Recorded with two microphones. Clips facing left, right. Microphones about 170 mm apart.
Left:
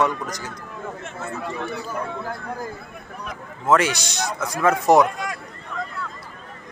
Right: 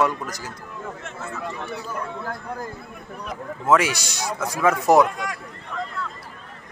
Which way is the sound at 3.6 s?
5° right (ahead or behind).